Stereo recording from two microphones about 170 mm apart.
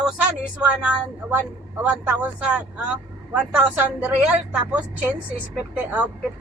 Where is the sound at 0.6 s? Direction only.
5° right (ahead or behind).